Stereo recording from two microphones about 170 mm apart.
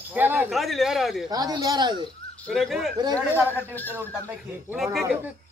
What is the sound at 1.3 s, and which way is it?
Speech, 25° right (ahead or behind).